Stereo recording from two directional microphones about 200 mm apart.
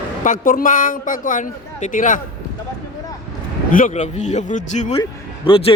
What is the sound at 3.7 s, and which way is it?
A man's voice, 40° left (ahead or behind).